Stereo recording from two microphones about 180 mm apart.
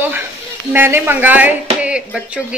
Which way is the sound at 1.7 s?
5° right (ahead or behind).